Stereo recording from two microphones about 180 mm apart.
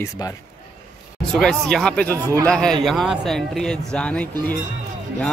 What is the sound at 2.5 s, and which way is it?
Speech, 5° left (ahead or behind).